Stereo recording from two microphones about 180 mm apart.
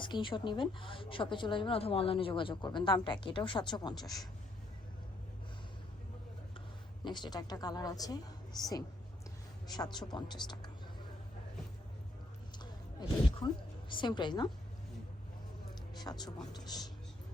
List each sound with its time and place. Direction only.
0.0 s a woman's voice: 25° left (ahead or behind)
7.0 s a woman's voice: 25° left (ahead or behind)
13.0 s a sound: 25° left (ahead or behind)
13.9 s a woman's voice: 25° left (ahead or behind)
16.0 s a woman's voice: 20° left (ahead or behind)